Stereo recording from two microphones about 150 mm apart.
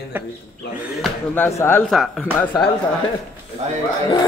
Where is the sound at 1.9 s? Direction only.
Centre (ahead or behind).